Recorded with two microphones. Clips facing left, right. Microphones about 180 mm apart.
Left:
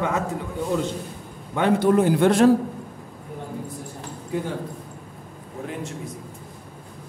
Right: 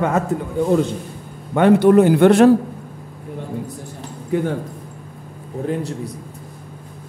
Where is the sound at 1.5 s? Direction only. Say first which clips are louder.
Right 7 dB; 60° right (ahead or behind).